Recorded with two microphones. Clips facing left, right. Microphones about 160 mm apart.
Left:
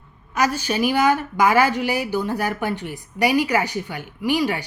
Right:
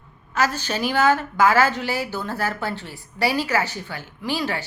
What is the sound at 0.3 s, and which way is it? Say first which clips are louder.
A woman's voice: left 2 dB; 10° left (ahead or behind).